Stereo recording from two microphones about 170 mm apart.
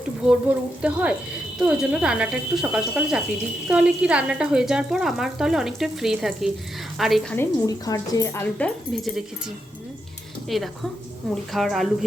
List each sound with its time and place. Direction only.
0.3 s speech: 5° right (ahead or behind)
7.3 s a woman's voice: 20° left (ahead or behind)
8.5 s speech: 5° left (ahead or behind)
10.5 s speech: centre (ahead or behind)